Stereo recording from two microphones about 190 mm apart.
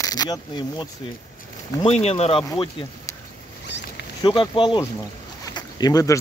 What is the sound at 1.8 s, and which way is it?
Speech, 35° left (ahead or behind).